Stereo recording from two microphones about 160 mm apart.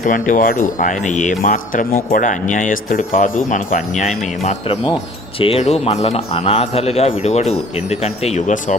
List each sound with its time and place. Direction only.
0.0 s speech: 55° left (ahead or behind)
4.0 s a man's voice: 45° left (ahead or behind)